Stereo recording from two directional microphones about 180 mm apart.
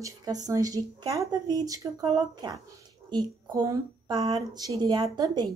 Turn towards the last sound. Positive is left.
turn(degrees=-25)  # may be behind; listen again after turning